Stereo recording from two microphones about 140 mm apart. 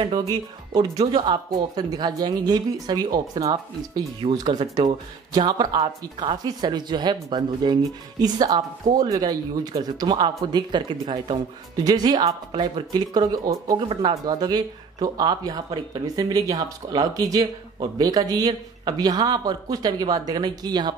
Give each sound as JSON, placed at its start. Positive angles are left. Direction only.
{"t": 0.2, "sound": "speech", "side_deg": -30}